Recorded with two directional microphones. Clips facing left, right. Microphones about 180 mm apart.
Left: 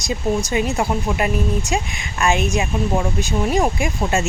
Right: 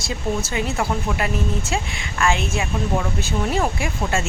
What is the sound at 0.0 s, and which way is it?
Speech, 20° left (ahead or behind).